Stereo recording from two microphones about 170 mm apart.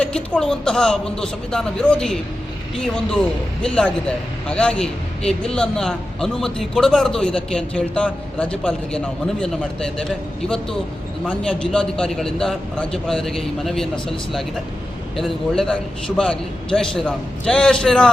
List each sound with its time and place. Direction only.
0.0 s a man's voice: 5° left (ahead or behind)
4.4 s a man's voice: 5° left (ahead or behind)
11.3 s a man's voice: 5° left (ahead or behind)